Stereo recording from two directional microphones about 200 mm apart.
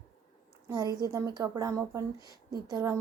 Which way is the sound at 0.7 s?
20° right (ahead or behind).